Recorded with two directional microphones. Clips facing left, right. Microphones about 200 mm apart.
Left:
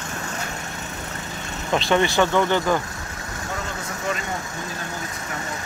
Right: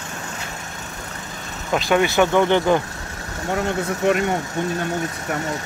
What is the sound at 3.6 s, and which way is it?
Speech, 65° right (ahead or behind).